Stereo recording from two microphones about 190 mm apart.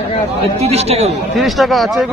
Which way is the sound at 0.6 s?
35° right (ahead or behind).